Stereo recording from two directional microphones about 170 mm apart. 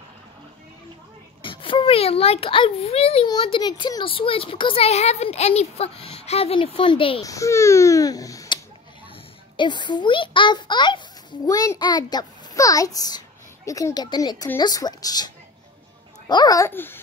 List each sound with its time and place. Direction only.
1.4 s a child's voice: 30° left (ahead or behind)
7.2 s a child's voice: 20° left (ahead or behind)
9.6 s a child's voice: 25° left (ahead or behind)